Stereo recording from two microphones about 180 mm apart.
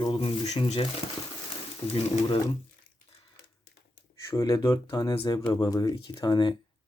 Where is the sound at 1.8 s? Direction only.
35° left (ahead or behind).